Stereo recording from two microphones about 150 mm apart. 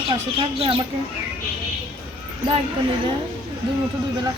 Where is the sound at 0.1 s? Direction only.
35° right (ahead or behind).